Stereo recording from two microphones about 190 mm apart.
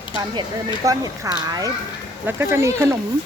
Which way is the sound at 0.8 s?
20° right (ahead or behind).